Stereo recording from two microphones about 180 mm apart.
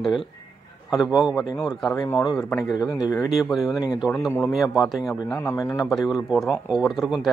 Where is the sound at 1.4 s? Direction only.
20° left (ahead or behind).